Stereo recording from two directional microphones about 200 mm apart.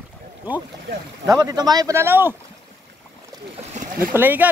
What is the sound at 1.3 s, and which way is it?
Speech, 20° right (ahead or behind).